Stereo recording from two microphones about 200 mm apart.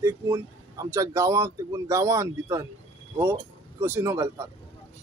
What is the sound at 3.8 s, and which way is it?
Speech, 10° right (ahead or behind).